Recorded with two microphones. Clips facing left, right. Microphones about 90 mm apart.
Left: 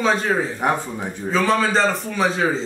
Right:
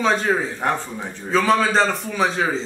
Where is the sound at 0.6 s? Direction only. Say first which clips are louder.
Left 2 dB; 15° left (ahead or behind).